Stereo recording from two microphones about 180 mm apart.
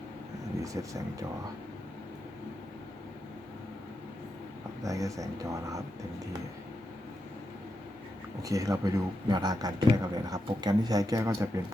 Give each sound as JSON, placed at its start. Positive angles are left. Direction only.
{"t": 0.6, "sound": "speech", "side_deg": -20}
{"t": 4.8, "sound": "speech", "side_deg": -20}
{"t": 8.4, "sound": "a man's voice", "side_deg": -20}